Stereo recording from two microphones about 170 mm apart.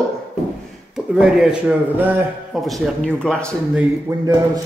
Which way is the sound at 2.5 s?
Centre (ahead or behind).